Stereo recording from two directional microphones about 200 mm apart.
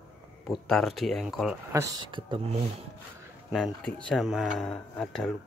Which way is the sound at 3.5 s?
Centre (ahead or behind).